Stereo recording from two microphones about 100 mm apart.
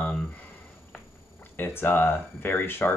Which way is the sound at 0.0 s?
15° left (ahead or behind).